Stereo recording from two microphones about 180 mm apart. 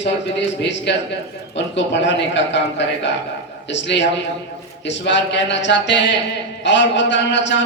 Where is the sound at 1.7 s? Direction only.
80° left.